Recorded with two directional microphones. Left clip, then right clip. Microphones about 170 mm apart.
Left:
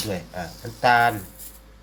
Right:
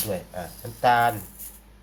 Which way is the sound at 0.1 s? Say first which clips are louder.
Even; 15° left (ahead or behind).